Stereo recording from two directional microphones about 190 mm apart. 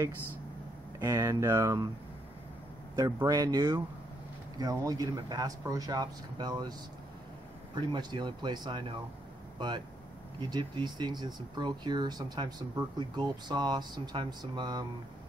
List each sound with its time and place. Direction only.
0.9 s speech: 15° right (ahead or behind)
3.0 s speech: 20° right (ahead or behind)
7.8 s speech: 25° right (ahead or behind)
10.4 s speech: 25° right (ahead or behind)